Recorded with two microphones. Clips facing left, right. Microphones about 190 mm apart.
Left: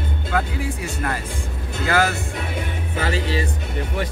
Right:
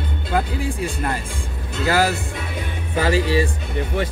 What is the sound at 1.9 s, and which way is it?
Speech, 35° right (ahead or behind).